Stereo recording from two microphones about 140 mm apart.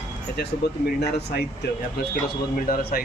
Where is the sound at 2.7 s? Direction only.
90° left.